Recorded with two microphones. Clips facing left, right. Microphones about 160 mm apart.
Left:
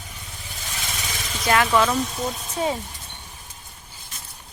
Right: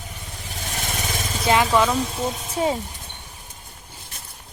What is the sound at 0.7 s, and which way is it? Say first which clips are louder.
Vehicle: right 5 dB; 45° right (ahead or behind).